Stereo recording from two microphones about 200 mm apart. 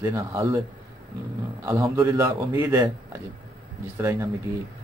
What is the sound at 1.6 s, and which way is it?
Speech, 15° right (ahead or behind).